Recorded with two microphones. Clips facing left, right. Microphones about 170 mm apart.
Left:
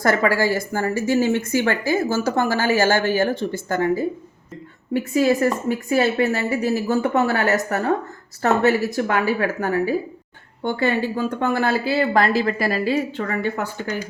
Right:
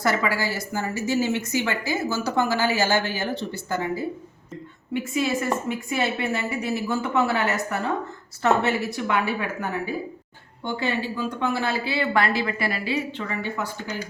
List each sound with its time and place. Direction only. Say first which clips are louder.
0.0 s a woman's voice: left 5 dB; 50° left (ahead or behind)
10.6 s speech: left 6 dB; 50° left (ahead or behind)